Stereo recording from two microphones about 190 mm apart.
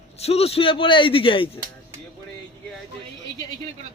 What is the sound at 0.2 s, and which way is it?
A man's voice, 30° left (ahead or behind).